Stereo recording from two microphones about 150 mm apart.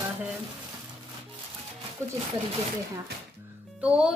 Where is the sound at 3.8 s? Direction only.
5° right (ahead or behind).